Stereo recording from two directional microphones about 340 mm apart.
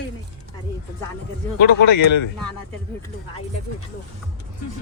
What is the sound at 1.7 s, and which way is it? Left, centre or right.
Speech, left.